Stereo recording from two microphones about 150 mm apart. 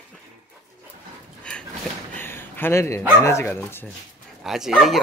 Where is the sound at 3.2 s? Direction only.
15° left (ahead or behind).